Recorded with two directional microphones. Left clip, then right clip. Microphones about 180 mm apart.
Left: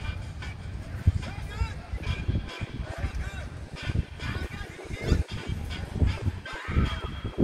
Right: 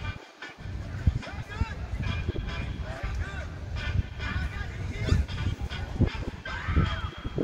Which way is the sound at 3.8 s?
40° right (ahead or behind).